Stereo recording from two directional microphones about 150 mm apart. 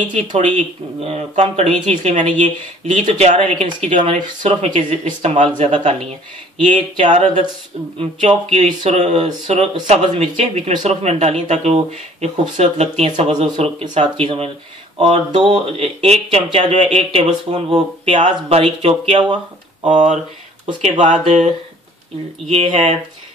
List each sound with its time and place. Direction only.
0.1 s speech: 55° right (ahead or behind)
3.1 s speech: 40° right (ahead or behind)
21.0 s speech: 50° right (ahead or behind)
22.5 s speech: 45° right (ahead or behind)